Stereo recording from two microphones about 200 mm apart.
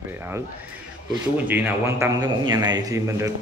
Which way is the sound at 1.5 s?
10° right (ahead or behind).